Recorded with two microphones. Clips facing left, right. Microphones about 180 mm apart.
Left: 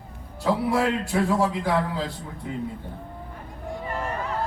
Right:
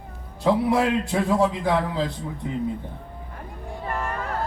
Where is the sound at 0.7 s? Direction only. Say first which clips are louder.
Right 2 dB; 20° right (ahead or behind).